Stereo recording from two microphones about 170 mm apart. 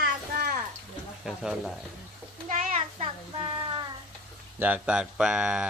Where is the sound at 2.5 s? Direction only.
45° right (ahead or behind).